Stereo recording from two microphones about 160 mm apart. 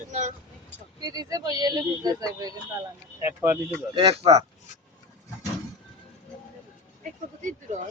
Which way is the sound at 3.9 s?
35° right (ahead or behind).